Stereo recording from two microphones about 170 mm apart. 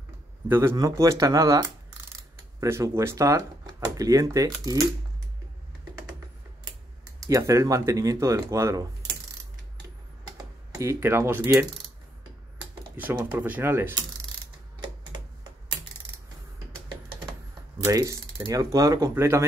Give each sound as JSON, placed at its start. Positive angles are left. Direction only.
{"t": 0.5, "sound": "speech", "side_deg": -15}
{"t": 7.2, "sound": "speech", "side_deg": -20}
{"t": 10.3, "sound": "speech", "side_deg": -20}
{"t": 12.9, "sound": "speech", "side_deg": -10}
{"t": 14.8, "sound": "a sound", "side_deg": -25}
{"t": 17.8, "sound": "speech", "side_deg": -20}